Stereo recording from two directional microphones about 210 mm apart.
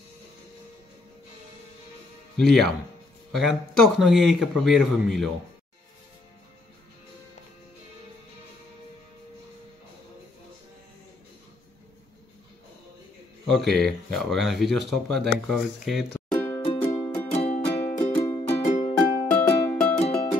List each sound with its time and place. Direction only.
2.3 s speech: centre (ahead or behind)
13.7 s speech: centre (ahead or behind)
16.8 s music: 10° left (ahead or behind)
17.3 s music: 30° left (ahead or behind)
18.1 s music: 15° left (ahead or behind)
18.5 s music: 30° left (ahead or behind)
18.9 s music: 10° left (ahead or behind)